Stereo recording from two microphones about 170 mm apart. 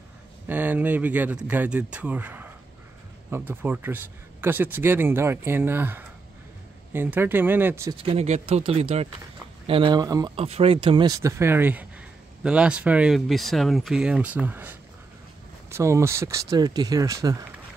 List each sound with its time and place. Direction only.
0.5 s speech: 10° right (ahead or behind)
8.0 s speech: 35° right (ahead or behind)
10.3 s speech: 35° right (ahead or behind)